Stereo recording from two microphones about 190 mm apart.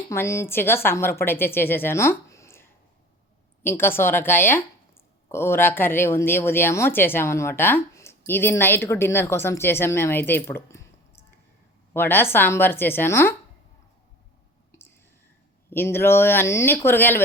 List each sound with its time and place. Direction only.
0.1 s speech: 15° left (ahead or behind)
14.7 s whispering: 15° left (ahead or behind)
15.7 s speech: 10° left (ahead or behind)